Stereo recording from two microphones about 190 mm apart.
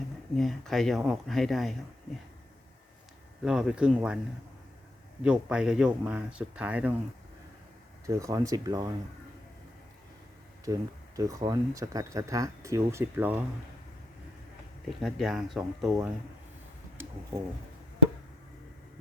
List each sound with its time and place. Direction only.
0.3 s speech: centre (ahead or behind)
3.4 s speech: 5° right (ahead or behind)
5.2 s speech: 5° right (ahead or behind)
8.0 s speech: 15° right (ahead or behind)
10.7 s speech: 15° right (ahead or behind)
14.8 s speech: centre (ahead or behind)